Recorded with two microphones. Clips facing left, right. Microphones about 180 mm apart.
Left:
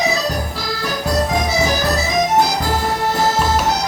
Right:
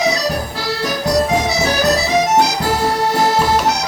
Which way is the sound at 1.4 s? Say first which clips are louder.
Right 1 dB; 70° right (ahead or behind).